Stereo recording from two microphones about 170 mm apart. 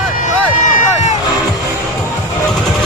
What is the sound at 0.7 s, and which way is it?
Run, 50° left (ahead or behind).